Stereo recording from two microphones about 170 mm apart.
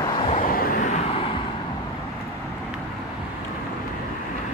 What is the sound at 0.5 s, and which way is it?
Vehicle, 55° left (ahead or behind).